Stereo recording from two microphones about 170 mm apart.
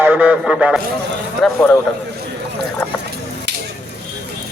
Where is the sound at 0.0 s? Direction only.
10° right (ahead or behind).